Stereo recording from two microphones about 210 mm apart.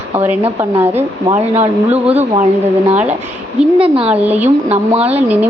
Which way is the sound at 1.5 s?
30° right (ahead or behind).